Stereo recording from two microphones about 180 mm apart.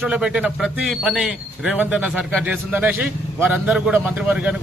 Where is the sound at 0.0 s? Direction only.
5° right (ahead or behind).